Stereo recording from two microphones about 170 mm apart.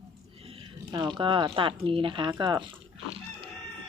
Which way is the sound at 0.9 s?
25° right (ahead or behind).